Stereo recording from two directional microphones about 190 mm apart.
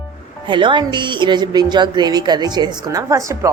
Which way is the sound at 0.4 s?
25° right (ahead or behind).